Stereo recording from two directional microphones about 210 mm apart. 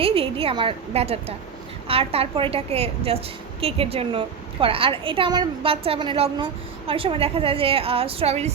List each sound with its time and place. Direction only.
0.0 s a woman's voice: 25° right (ahead or behind)